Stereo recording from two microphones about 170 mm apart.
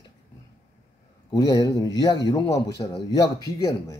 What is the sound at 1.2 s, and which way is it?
A man's voice, 25° left (ahead or behind).